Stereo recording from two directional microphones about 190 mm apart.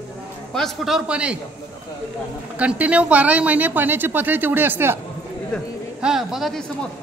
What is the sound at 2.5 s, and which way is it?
Speech, 5° right (ahead or behind).